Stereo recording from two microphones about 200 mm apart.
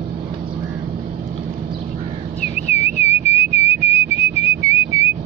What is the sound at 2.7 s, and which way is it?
Whistling, 35° left (ahead or behind).